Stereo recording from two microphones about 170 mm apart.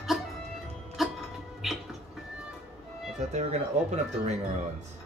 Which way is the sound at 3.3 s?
40° right (ahead or behind).